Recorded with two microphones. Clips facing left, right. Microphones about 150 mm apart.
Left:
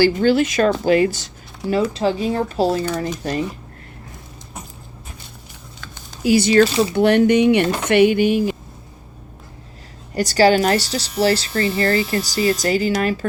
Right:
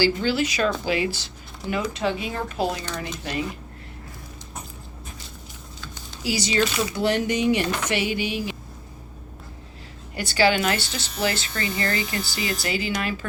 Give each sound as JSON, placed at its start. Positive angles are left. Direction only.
{"t": 0.0, "sound": "speech", "side_deg": 50}
{"t": 1.7, "sound": "speech", "side_deg": 35}
{"t": 5.8, "sound": "a sound", "side_deg": 55}
{"t": 6.9, "sound": "speech", "side_deg": 60}
{"t": 10.2, "sound": "speech", "side_deg": 40}